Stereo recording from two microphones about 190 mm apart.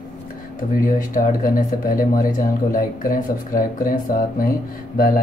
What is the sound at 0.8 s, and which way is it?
Speech, 45° left (ahead or behind).